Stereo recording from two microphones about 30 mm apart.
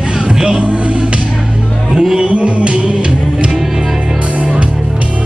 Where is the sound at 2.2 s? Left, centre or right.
Right.